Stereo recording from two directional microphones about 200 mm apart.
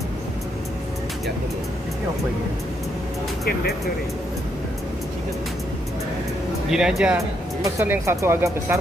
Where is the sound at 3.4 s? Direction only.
55° left (ahead or behind).